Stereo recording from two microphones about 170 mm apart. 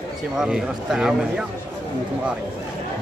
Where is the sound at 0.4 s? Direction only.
5° right (ahead or behind).